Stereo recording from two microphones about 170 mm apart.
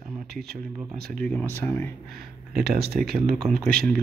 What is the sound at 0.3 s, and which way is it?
Speech, 65° right (ahead or behind).